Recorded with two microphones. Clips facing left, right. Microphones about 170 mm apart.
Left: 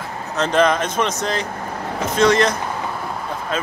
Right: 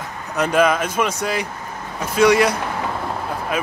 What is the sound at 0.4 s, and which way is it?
Speech, 10° right (ahead or behind).